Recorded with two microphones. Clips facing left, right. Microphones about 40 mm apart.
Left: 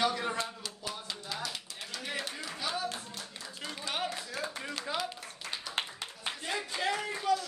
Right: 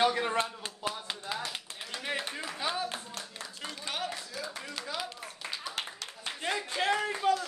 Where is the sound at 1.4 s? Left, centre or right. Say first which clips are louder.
Right 1 dB; right.